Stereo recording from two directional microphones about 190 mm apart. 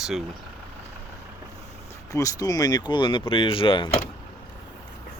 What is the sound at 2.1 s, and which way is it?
Speech, 20° left (ahead or behind).